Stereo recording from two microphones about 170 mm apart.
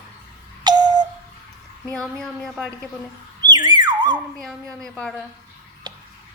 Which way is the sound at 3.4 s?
25° right (ahead or behind).